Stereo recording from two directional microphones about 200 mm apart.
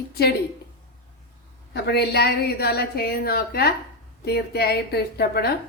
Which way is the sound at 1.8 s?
55° left (ahead or behind).